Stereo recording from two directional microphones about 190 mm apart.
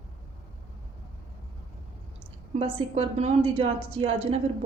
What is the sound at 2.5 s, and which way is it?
A woman's voice, 30° right (ahead or behind).